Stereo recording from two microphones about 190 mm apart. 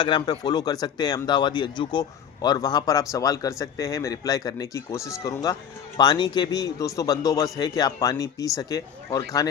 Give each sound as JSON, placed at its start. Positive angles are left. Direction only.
{"t": 0.0, "sound": "speech", "side_deg": 25}